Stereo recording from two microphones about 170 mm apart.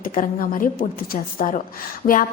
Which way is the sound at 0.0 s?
55° left (ahead or behind).